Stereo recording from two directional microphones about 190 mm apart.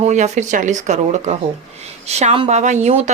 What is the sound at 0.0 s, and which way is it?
Speech, 40° right (ahead or behind).